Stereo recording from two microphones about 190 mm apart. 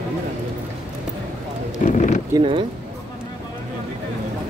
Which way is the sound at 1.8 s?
40° left (ahead or behind).